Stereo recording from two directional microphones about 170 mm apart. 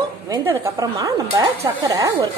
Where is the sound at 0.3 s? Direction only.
15° right (ahead or behind).